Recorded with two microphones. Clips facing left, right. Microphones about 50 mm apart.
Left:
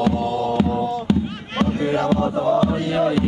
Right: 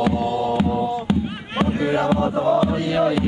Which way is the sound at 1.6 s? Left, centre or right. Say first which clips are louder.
Even; centre.